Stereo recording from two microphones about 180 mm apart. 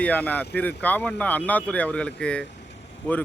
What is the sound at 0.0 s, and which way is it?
Speech, 10° left (ahead or behind).